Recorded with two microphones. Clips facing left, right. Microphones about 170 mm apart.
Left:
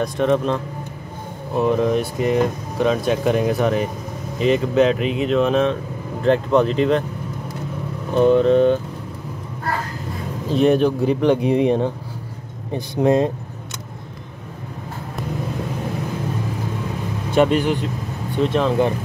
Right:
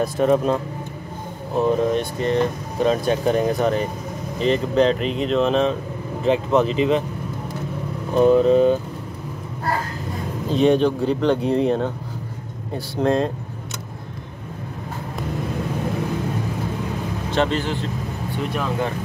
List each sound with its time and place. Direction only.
0.0 s speech: 5° right (ahead or behind)
1.6 s speech: 5° left (ahead or behind)
8.1 s speech: 5° right (ahead or behind)
10.5 s speech: 5° left (ahead or behind)
17.3 s speech: 15° left (ahead or behind)